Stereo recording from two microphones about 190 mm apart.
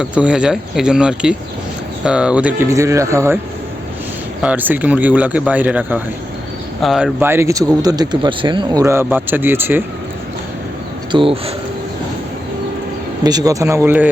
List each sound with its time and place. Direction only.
0.0 s speech: 5° right (ahead or behind)
4.4 s speech: 10° right (ahead or behind)
11.1 s speech: 30° right (ahead or behind)
13.2 s speech: 20° right (ahead or behind)